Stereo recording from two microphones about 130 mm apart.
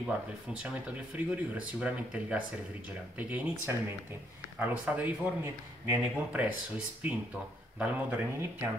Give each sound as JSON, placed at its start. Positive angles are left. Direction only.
{"t": 0.0, "sound": "speech", "side_deg": -10}